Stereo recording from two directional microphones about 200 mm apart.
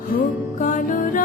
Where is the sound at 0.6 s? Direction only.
40° left (ahead or behind).